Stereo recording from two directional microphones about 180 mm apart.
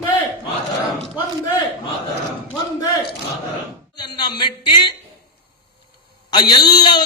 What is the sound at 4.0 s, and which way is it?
Speech, 25° left (ahead or behind).